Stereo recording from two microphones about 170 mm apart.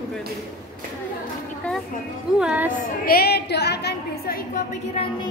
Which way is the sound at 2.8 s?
60° left (ahead or behind).